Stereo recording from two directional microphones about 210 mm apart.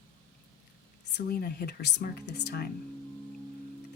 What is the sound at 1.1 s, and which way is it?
Speech, 45° left (ahead or behind).